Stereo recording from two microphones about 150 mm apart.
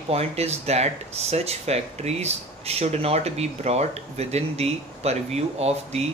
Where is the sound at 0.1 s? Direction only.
40° right (ahead or behind).